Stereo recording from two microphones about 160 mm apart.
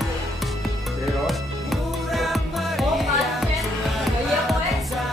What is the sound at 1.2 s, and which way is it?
Music, centre (ahead or behind).